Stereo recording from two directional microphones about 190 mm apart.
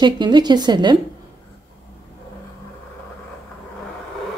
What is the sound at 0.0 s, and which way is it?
Speech, 25° right (ahead or behind).